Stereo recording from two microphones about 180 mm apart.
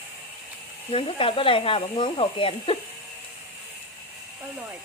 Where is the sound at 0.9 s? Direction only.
30° left (ahead or behind).